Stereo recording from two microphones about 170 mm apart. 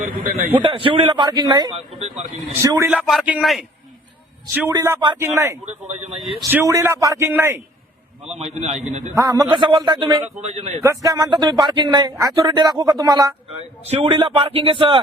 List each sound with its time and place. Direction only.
0.0 s a man's voice: 55° right (ahead or behind)
0.6 s speech: 30° right (ahead or behind)
1.7 s speech: 40° right (ahead or behind)
2.6 s speech: 20° right (ahead or behind)
2.8 s a man's voice: 5° right (ahead or behind)
4.7 s speech: 20° right (ahead or behind)
6.5 s a man's voice: 15° right (ahead or behind)
8.4 s a man's voice: 40° right (ahead or behind)
9.1 s speech: 20° right (ahead or behind)
10.4 s a man's voice: 40° right (ahead or behind)
10.8 s speech: 20° right (ahead or behind)
13.8 s a man's voice: 35° right (ahead or behind)